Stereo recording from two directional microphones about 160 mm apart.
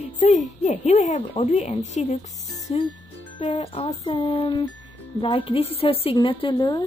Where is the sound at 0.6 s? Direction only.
45° left (ahead or behind); by 6.8 s 25° left (ahead or behind).